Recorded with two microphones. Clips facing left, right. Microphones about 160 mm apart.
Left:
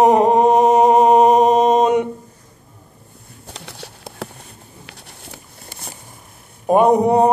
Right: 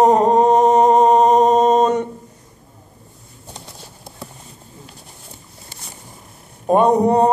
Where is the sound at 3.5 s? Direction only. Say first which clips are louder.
Left 3 dB; 75° left (ahead or behind).